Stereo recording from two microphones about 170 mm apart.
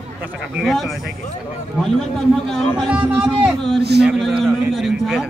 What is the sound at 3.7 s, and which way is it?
Speech, 75° right (ahead or behind).